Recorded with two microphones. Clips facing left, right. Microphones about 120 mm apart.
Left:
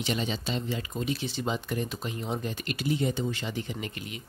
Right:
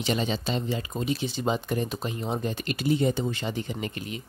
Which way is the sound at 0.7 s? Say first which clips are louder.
Right 3 dB; 25° right (ahead or behind).